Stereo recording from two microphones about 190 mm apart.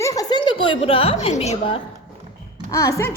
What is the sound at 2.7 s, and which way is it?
Speech, 15° left (ahead or behind).